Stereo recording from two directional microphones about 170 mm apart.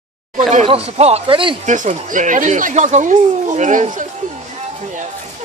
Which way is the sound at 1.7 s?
45° right (ahead or behind).